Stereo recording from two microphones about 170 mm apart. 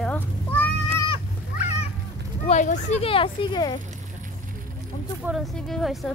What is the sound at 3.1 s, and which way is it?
Speech, 30° left (ahead or behind).